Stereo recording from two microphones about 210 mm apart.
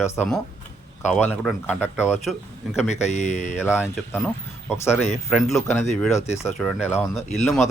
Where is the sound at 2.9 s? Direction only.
35° left (ahead or behind).